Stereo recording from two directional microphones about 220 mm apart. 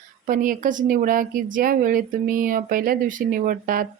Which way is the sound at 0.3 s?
40° right (ahead or behind).